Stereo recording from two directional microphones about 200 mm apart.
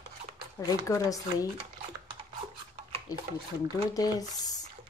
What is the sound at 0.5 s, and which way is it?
Speech, 15° left (ahead or behind).